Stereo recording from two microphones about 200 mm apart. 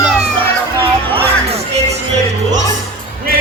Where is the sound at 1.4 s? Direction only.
30° right (ahead or behind).